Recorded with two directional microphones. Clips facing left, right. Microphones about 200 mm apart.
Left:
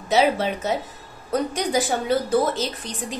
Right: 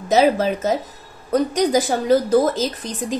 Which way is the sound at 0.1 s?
40° right (ahead or behind).